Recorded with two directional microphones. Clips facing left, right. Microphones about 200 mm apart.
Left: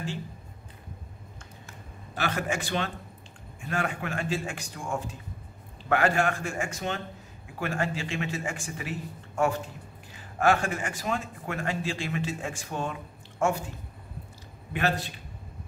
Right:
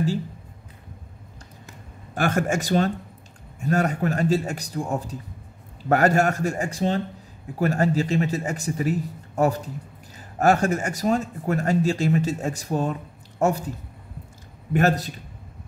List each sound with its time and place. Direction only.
2.1 s a man's voice: 50° right (ahead or behind)